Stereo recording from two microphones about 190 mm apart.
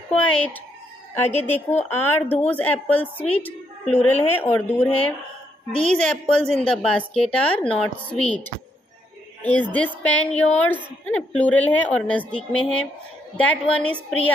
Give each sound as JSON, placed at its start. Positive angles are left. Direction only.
{"t": 0.3, "sound": "a woman's voice", "side_deg": 5}
{"t": 1.3, "sound": "a woman's voice", "side_deg": 35}
{"t": 1.9, "sound": "a woman's voice", "side_deg": 10}
{"t": 3.3, "sound": "a sound", "side_deg": 5}
{"t": 4.1, "sound": "a woman's voice", "side_deg": 10}
{"t": 9.4, "sound": "a woman's voice", "side_deg": 10}